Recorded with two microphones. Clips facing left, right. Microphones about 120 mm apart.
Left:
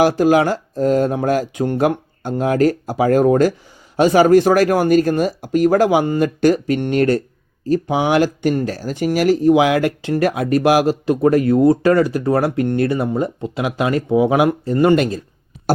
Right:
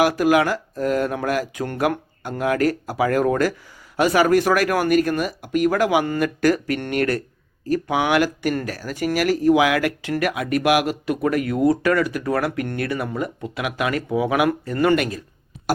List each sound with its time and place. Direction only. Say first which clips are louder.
0.0 s speech: left 4 dB; 30° left (ahead or behind)